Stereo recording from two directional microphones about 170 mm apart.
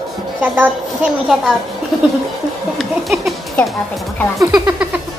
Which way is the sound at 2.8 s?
Centre (ahead or behind).